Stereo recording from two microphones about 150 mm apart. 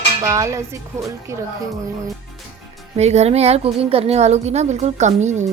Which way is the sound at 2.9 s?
45° right (ahead or behind).